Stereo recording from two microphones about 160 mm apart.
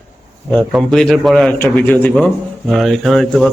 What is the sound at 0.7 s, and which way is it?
Speech, 5° left (ahead or behind).